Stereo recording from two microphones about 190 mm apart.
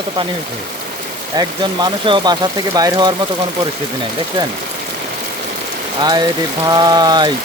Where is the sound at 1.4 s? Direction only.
25° right (ahead or behind).